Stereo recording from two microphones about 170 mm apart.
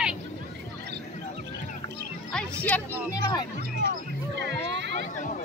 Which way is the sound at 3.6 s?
55° right (ahead or behind).